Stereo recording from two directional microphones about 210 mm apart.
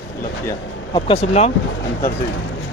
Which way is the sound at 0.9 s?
30° left (ahead or behind).